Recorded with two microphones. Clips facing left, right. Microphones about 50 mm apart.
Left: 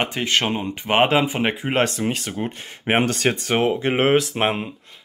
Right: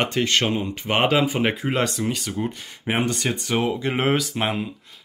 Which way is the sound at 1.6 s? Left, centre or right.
Left.